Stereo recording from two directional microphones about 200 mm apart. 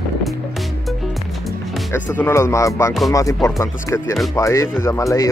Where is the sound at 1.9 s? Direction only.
10° left (ahead or behind).